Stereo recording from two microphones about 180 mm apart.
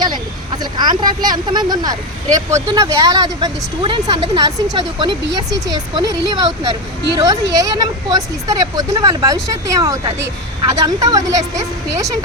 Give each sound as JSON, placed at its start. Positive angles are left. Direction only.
{"t": 0.6, "sound": "speech", "side_deg": -25}